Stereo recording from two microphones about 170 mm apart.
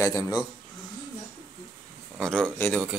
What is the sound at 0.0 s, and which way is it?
Speech, 20° left (ahead or behind).